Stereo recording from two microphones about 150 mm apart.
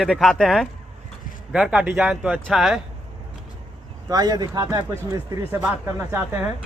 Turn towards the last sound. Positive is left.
turn(degrees=-15)  # may be behind; listen again after turning